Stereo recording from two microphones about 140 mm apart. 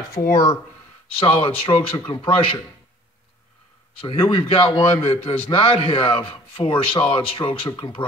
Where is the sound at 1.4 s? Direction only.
40° left (ahead or behind).